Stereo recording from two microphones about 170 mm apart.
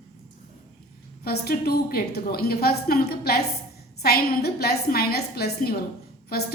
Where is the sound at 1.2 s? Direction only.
65° left (ahead or behind).